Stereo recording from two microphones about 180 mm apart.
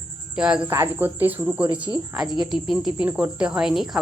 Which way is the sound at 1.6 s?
25° right (ahead or behind).